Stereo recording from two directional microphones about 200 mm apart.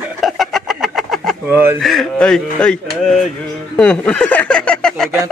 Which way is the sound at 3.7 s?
5° left (ahead or behind).